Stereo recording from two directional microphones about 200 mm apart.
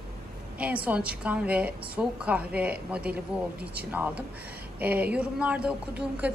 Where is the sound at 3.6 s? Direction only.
55° right (ahead or behind).